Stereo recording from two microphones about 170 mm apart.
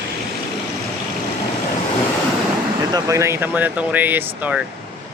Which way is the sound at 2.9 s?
20° right (ahead or behind).